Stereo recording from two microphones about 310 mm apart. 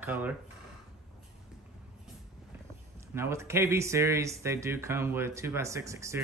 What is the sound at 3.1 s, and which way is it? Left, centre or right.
Speech, centre.